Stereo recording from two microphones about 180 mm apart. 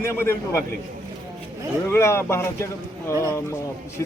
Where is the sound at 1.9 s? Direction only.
15° left (ahead or behind).